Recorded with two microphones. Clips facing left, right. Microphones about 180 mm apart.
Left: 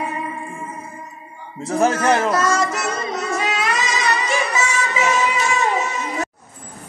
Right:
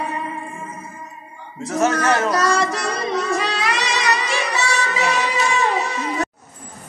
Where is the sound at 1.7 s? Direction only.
35° left (ahead or behind).